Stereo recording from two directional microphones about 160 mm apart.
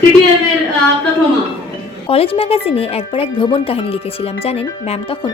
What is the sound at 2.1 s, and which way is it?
Speech, 35° left (ahead or behind).